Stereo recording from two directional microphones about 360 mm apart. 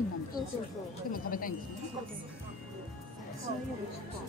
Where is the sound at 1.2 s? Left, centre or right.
Left.